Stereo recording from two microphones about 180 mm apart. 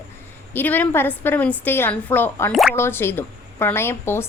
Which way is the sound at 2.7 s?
15° left (ahead or behind).